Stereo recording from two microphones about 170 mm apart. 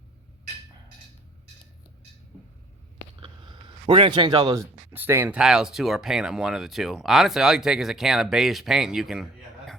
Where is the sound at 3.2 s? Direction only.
30° right (ahead or behind).